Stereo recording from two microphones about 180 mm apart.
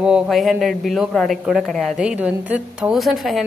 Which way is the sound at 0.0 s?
5° right (ahead or behind).